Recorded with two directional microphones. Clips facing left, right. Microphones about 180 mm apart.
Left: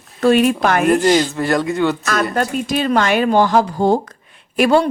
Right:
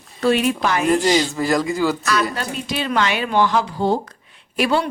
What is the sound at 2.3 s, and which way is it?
Speech, 50° left (ahead or behind).